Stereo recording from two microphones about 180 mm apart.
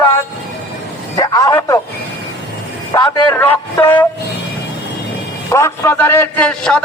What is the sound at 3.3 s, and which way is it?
Speech, 10° left (ahead or behind).